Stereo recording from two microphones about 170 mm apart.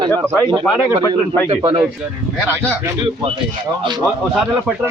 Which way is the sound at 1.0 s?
15° left (ahead or behind).